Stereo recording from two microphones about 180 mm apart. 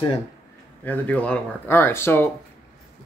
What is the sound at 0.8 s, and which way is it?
Speech, 10° left (ahead or behind).